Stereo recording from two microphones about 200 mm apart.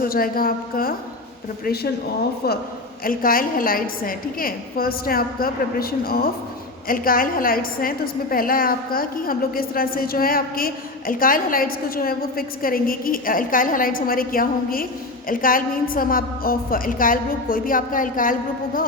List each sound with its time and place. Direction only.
0.0 s a woman's voice: 45° left (ahead or behind)
3.0 s a woman's voice: 45° left (ahead or behind)